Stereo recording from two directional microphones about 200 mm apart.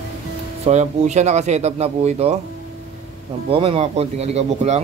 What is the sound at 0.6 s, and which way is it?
Speech, 35° right (ahead or behind).